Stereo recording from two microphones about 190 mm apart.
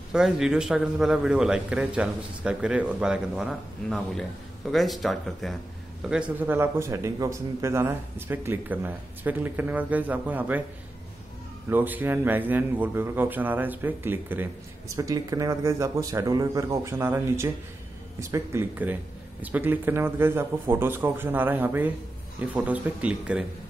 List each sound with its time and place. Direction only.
0.1 s a man's voice: 5° right (ahead or behind)
11.7 s a man's voice: 10° right (ahead or behind)